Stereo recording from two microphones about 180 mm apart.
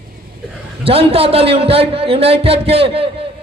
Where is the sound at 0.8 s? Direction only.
30° right (ahead or behind).